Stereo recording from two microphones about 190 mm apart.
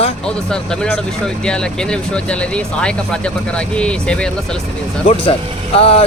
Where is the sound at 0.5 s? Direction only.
5° left (ahead or behind).